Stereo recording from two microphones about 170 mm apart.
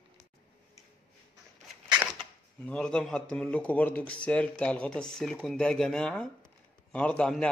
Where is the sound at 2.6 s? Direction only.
5° left (ahead or behind).